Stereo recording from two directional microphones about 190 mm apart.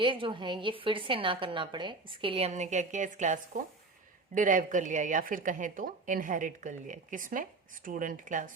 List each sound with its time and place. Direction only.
0.0 s a woman's voice: 25° right (ahead or behind); by 8.4 s 40° right (ahead or behind)